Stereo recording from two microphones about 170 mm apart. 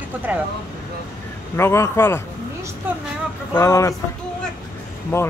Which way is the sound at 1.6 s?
15° left (ahead or behind).